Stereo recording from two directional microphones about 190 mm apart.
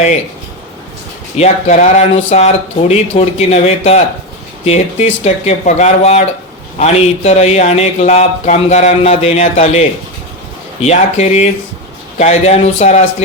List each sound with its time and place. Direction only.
1.4 s speech: 35° left (ahead or behind)